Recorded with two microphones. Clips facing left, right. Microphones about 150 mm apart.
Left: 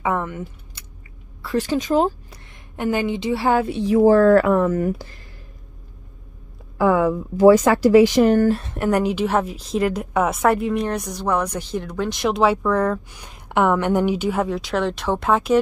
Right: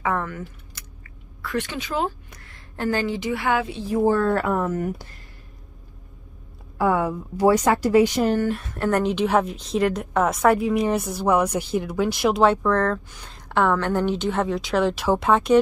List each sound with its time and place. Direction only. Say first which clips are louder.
0.0 s a sound: left 2 dB; 20° left (ahead or behind)
1.4 s a woman's voice: left 6 dB; 30° left (ahead or behind)
2.3 s a sound: left 2 dB; 20° left (ahead or behind)
3.2 s a woman's voice: left 4 dB; 30° left (ahead or behind)
3.6 s a woman's voice: left 6 dB; 70° left (ahead or behind); by 5.2 s 90° left
7.7 s a woman's voice: left 5 dB; 90° left
8.5 s a woman's voice: left 6 dB; 35° left (ahead or behind)
8.7 s a woman's voice: left 2 dB; 10° left (ahead or behind)